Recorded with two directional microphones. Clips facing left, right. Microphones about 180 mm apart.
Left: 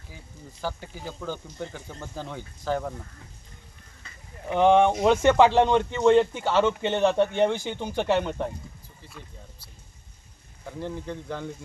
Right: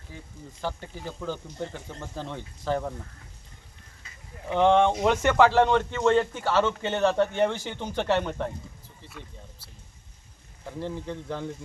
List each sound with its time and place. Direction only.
0.6 s speech: 5° left (ahead or behind)
4.4 s speech: 15° left (ahead or behind)
9.0 s speech: centre (ahead or behind)
10.7 s speech: centre (ahead or behind)